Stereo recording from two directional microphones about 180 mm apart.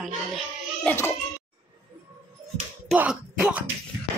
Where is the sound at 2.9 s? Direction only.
5° right (ahead or behind).